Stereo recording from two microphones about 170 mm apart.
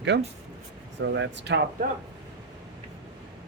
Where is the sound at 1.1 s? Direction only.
90° right.